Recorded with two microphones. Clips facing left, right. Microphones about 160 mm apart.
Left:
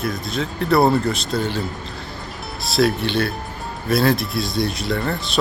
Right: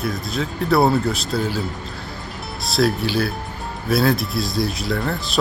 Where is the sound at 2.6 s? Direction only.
Centre (ahead or behind).